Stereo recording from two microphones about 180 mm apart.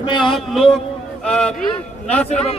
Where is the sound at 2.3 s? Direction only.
35° left (ahead or behind).